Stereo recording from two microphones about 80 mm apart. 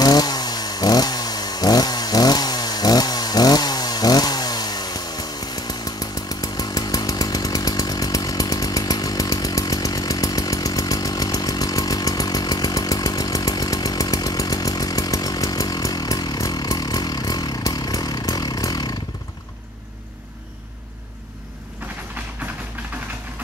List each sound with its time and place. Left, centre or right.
0.0 s chainsaw: left